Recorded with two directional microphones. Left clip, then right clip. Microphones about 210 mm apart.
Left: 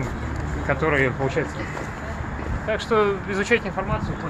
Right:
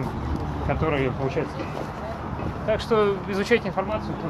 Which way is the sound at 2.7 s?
Centre (ahead or behind).